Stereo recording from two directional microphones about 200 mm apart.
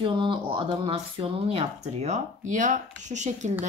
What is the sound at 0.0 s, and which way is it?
Speech, 25° right (ahead or behind).